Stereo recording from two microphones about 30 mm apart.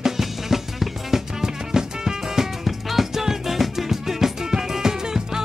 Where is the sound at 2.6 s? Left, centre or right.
Centre.